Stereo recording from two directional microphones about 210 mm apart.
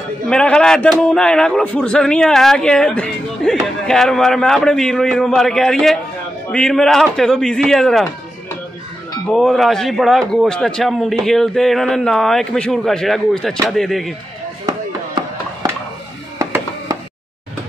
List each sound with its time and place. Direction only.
0.3 s a man's voice: 5° left (ahead or behind)
9.3 s a man's voice: centre (ahead or behind)
14.7 s chop: 15° right (ahead or behind)
16.3 s a sound: 15° right (ahead or behind)